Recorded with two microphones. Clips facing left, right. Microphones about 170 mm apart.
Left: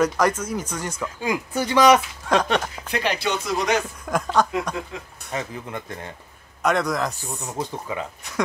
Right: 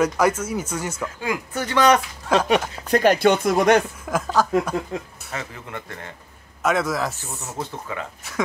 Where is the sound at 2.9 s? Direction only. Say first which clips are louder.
Right 8 dB; 45° right (ahead or behind).